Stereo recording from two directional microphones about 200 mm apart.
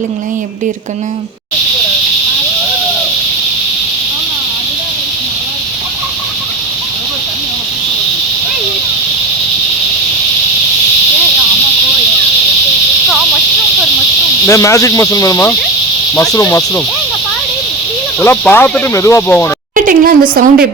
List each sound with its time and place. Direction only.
14.4 s speech: 15° left (ahead or behind)
18.2 s speech: 10° left (ahead or behind)
19.7 s a sound: 45° right (ahead or behind)